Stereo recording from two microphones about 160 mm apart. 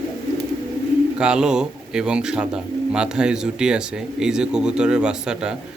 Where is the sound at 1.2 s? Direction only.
5° right (ahead or behind).